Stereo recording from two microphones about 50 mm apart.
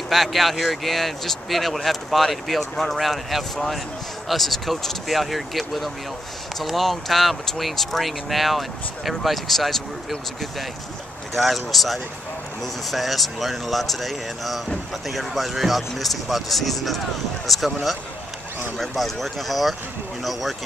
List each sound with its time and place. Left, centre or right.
0.1 s speech: centre